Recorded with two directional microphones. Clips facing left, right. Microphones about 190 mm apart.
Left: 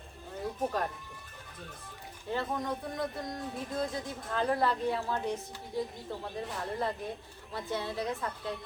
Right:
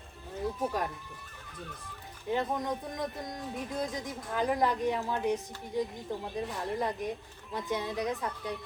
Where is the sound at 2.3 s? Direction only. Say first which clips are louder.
Right 2 dB; 20° right (ahead or behind).